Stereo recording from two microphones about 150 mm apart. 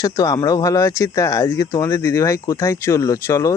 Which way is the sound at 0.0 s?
25° left (ahead or behind).